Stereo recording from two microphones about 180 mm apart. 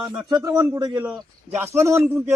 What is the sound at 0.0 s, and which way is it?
Speech, 5° right (ahead or behind).